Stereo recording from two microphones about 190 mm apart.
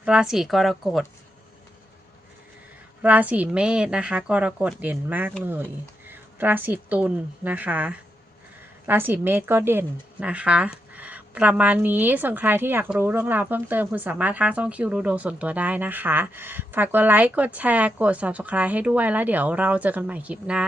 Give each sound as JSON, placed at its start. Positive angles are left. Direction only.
{"t": 0.0, "sound": "a woman's voice", "side_deg": -5}
{"t": 3.0, "sound": "a woman's voice", "side_deg": -10}